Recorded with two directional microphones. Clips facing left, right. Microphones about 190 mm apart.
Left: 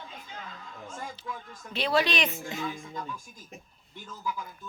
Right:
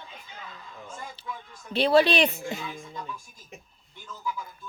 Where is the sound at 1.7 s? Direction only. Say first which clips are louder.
Right 6 dB; 30° right (ahead or behind).